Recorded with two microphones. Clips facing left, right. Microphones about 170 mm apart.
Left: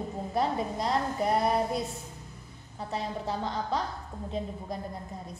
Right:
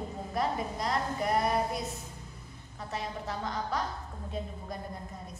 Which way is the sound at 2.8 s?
30° left (ahead or behind).